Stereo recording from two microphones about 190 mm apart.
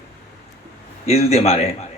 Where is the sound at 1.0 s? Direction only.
35° left (ahead or behind).